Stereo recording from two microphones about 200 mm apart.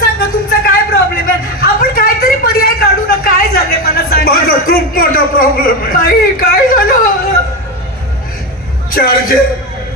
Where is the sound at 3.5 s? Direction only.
50° left (ahead or behind).